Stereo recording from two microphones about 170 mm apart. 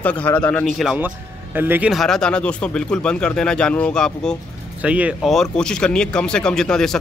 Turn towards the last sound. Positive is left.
turn(degrees=5)  # may be behind; listen again after turning